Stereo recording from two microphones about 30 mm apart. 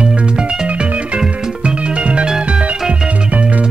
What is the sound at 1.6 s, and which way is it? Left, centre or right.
Music, right.